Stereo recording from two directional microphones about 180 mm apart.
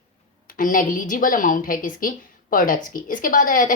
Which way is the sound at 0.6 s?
50° left (ahead or behind).